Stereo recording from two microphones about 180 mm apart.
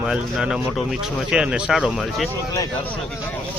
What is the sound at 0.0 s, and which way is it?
Speech, 5° right (ahead or behind).